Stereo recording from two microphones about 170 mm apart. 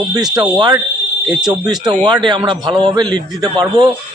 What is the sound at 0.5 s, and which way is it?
A man's voice, 25° right (ahead or behind).